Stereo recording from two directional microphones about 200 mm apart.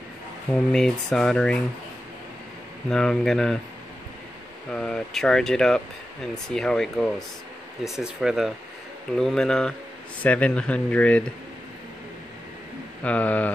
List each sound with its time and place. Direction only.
0.5 s speech: 5° left (ahead or behind)
2.9 s speech: centre (ahead or behind)
4.7 s speech: 5° left (ahead or behind)
13.0 s speech: 5° left (ahead or behind)